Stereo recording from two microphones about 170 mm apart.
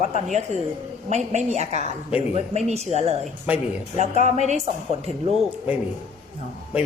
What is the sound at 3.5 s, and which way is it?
Speech, 5° right (ahead or behind).